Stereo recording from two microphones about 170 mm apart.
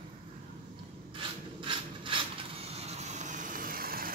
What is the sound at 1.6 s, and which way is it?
Mechanisms, 30° right (ahead or behind).